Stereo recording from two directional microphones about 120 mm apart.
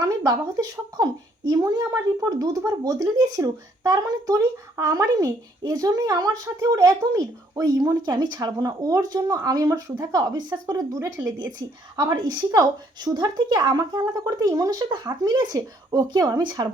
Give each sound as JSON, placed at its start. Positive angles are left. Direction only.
{"t": 0.0, "sound": "speech", "side_deg": -30}